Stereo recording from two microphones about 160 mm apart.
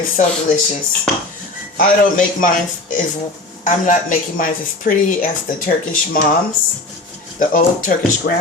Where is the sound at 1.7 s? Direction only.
55° left (ahead or behind).